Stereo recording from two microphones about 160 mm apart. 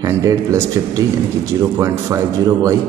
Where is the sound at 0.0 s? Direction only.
20° right (ahead or behind).